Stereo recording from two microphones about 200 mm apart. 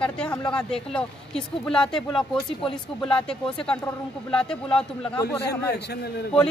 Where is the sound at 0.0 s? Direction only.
5° left (ahead or behind).